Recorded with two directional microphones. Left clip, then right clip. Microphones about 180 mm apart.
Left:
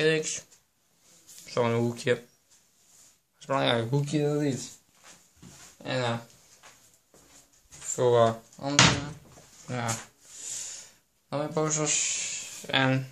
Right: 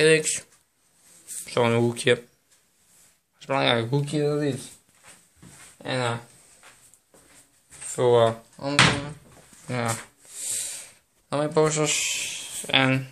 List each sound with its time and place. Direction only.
0.0 s speech: 35° right (ahead or behind)
3.3 s speech: 10° right (ahead or behind)
5.8 s speech: 20° right (ahead or behind)
7.9 s speech: 15° right (ahead or behind)
9.7 s speech: 35° right (ahead or behind)
10.6 s a sound: 30° right (ahead or behind)